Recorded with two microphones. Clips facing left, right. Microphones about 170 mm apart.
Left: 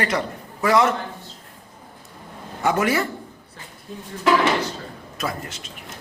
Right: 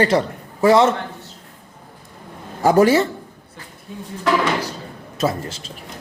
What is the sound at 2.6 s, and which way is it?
Speech, 35° right (ahead or behind).